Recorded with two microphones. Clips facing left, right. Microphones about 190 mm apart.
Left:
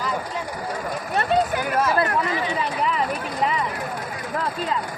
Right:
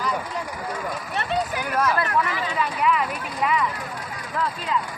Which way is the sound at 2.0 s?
30° left (ahead or behind).